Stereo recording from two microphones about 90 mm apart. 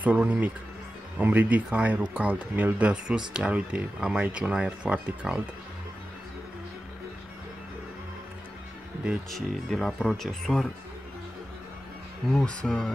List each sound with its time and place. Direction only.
0.0 s speech: 15° right (ahead or behind)
9.3 s speech: 5° left (ahead or behind)
12.3 s speech: 10° left (ahead or behind)